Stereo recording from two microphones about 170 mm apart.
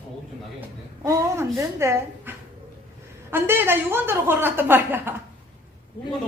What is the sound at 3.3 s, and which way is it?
Speech, 15° right (ahead or behind).